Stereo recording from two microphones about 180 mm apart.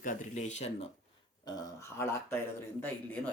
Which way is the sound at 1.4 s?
15° left (ahead or behind).